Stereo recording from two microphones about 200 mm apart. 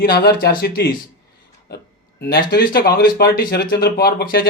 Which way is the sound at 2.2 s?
50° left (ahead or behind).